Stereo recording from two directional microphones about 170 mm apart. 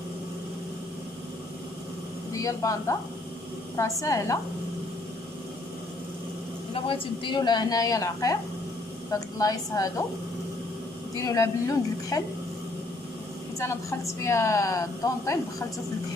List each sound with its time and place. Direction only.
2.3 s a woman's voice: 20° left (ahead or behind)
6.7 s a woman's voice: 30° left (ahead or behind)
11.1 s a woman's voice: 20° left (ahead or behind)
13.6 s a woman's voice: 15° left (ahead or behind)